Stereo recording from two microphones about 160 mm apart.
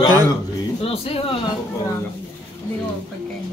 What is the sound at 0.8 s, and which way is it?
Speech, 35° left (ahead or behind).